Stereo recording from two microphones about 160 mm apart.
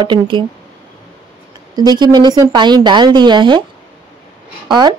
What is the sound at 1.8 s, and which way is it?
Speech, 25° right (ahead or behind).